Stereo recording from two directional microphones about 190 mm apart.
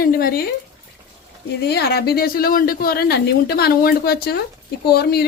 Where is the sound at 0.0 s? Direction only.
50° left (ahead or behind).